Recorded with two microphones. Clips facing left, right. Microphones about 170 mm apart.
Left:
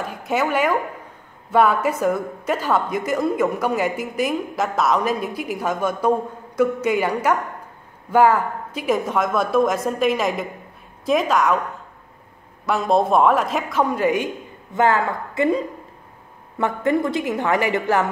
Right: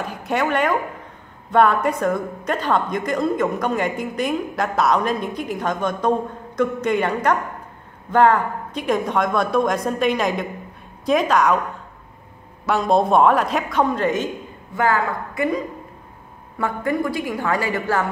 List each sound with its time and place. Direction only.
0.0 s a woman's voice: centre (ahead or behind)
12.6 s a woman's voice: centre (ahead or behind); by 18.1 s 20° left (ahead or behind)